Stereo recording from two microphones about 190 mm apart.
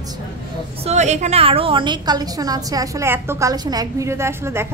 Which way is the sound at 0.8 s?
35° right (ahead or behind).